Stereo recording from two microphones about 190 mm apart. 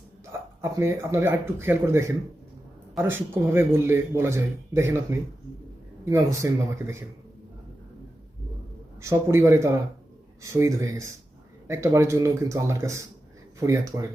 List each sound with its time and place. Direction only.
0.6 s a man's voice: 15° right (ahead or behind)
9.0 s a man's voice: 15° right (ahead or behind)